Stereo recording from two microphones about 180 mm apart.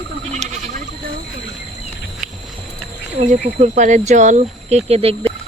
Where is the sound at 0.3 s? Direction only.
40° right (ahead or behind).